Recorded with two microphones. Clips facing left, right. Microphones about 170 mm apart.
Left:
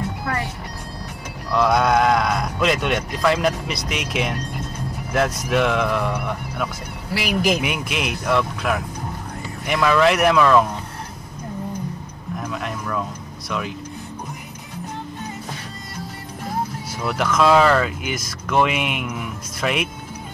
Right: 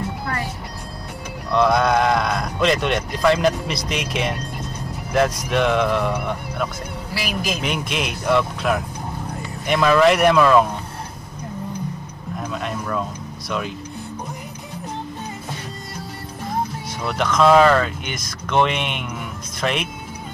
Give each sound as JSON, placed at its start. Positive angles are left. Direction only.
{"t": 1.5, "sound": "speech", "side_deg": 0}
{"t": 12.4, "sound": "a sound", "side_deg": 0}
{"t": 13.5, "sound": "speech", "side_deg": 0}
{"t": 17.0, "sound": "speech", "side_deg": 5}